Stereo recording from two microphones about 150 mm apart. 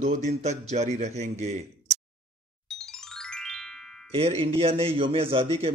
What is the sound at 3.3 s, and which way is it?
Music, 5° left (ahead or behind).